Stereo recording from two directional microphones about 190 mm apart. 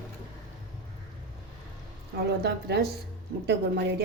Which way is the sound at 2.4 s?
60° right (ahead or behind).